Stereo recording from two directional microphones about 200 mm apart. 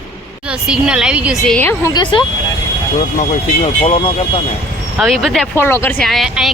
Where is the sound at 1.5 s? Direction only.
10° left (ahead or behind).